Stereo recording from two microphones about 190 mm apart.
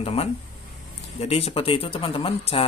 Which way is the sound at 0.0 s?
35° left (ahead or behind).